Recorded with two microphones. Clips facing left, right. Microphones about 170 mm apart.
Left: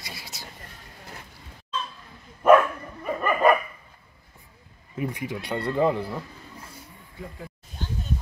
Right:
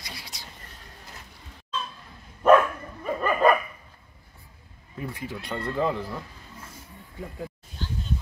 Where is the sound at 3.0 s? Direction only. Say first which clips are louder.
Even; 10° left (ahead or behind).